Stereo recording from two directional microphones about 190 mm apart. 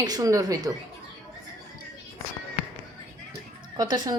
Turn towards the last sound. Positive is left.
turn(degrees=-20)  # may be behind; listen again after turning